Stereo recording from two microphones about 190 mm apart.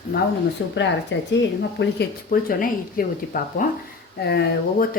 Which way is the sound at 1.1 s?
75° left (ahead or behind).